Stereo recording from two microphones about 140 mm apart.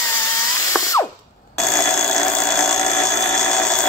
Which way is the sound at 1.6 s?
5° left (ahead or behind).